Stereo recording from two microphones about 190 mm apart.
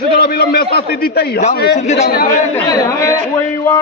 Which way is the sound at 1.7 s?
40° left (ahead or behind).